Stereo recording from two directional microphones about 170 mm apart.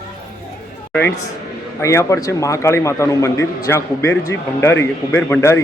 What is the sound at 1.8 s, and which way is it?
Speech, 15° left (ahead or behind).